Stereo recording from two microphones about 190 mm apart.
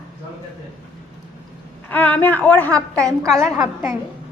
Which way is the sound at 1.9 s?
10° left (ahead or behind).